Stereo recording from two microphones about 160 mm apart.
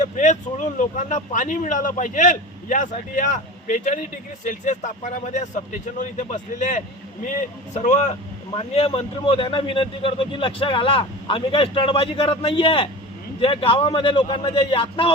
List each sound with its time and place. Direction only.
0.0 s a man's voice: 50° left (ahead or behind); by 15.1 s 35° left (ahead or behind)